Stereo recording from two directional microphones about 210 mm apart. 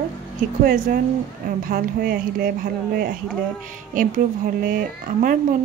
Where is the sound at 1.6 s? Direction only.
45° right (ahead or behind).